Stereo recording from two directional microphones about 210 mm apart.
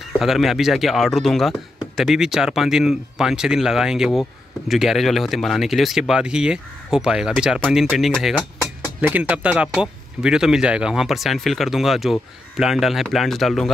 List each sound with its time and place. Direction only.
0.2 s speech: centre (ahead or behind)